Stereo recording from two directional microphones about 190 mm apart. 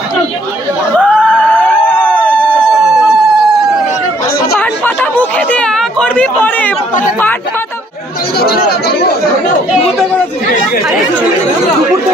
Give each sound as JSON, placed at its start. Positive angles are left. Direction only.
{"t": 0.9, "sound": "a sound", "side_deg": 5}
{"t": 4.6, "sound": "chatter", "side_deg": 10}
{"t": 8.4, "sound": "chatter", "side_deg": 55}